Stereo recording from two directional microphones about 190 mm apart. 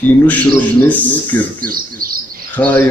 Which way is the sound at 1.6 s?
50° right (ahead or behind).